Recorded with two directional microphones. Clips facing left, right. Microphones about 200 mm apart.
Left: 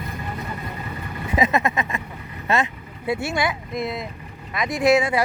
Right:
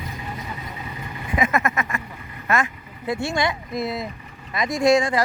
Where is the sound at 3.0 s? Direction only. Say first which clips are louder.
Even; 5° left (ahead or behind).